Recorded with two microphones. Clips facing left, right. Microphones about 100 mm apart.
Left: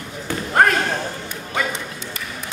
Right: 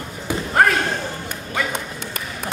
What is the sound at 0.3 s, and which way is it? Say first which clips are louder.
Slam: right 2 dB; 15° right (ahead or behind).